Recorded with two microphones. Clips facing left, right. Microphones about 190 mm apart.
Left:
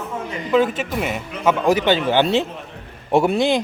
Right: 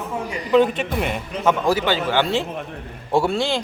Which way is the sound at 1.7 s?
20° left (ahead or behind).